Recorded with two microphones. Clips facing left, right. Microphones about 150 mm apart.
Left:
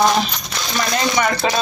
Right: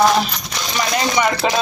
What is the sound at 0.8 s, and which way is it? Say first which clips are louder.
Speech: right 1 dB; 15° right (ahead or behind).